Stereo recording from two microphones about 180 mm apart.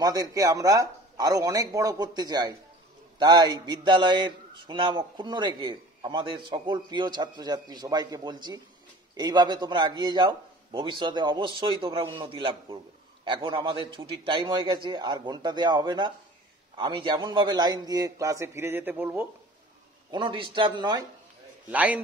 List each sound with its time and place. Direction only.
0.0 s a man's voice: 20° right (ahead or behind)
20.1 s a man's voice: 25° right (ahead or behind)
21.6 s a man's voice: 10° right (ahead or behind)